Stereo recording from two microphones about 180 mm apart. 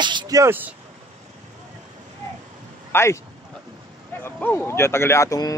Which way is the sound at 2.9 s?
15° left (ahead or behind).